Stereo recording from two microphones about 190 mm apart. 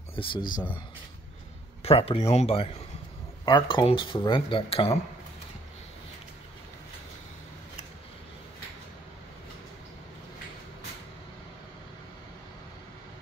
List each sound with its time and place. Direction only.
0.1 s speech: 25° left (ahead or behind)
1.8 s speech: 30° left (ahead or behind)